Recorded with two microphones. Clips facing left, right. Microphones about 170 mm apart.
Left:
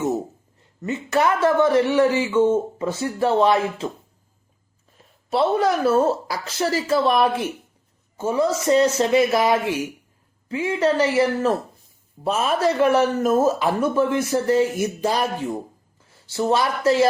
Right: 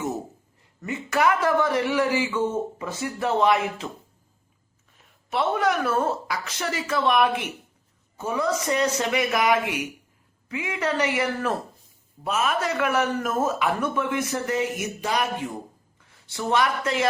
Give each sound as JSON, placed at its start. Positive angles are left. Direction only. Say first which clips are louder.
{"t": 0.8, "sound": "speech", "louder": "left 3 dB", "side_deg": 25}
{"t": 5.3, "sound": "speech", "louder": "left 4 dB", "side_deg": 35}